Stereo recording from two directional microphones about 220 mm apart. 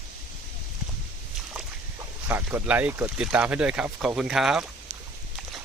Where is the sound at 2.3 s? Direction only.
5° right (ahead or behind).